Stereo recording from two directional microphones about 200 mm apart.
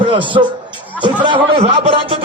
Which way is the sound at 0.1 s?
25° right (ahead or behind).